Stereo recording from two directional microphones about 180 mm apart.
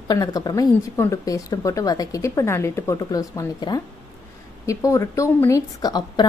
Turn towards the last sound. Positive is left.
turn(degrees=25)  # may be behind; listen again after turning